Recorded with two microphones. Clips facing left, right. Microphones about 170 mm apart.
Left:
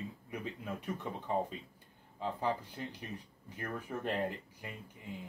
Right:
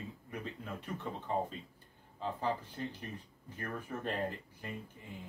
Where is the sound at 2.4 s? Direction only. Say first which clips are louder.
Even; 15° left (ahead or behind).